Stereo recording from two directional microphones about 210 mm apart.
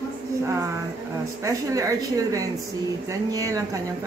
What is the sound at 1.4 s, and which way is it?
A woman's voice, 15° right (ahead or behind).